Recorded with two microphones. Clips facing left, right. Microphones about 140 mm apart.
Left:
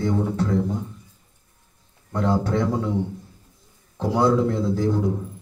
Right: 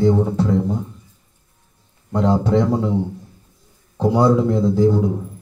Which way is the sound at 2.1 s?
25° right (ahead or behind).